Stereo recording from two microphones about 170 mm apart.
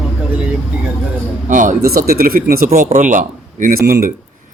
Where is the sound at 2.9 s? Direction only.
50° right (ahead or behind).